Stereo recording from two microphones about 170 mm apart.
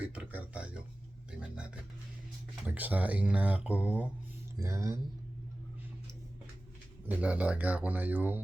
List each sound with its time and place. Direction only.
0.0 s a sound: 10° right (ahead or behind)
2.6 s speech: 10° right (ahead or behind)
7.1 s speech: 10° right (ahead or behind)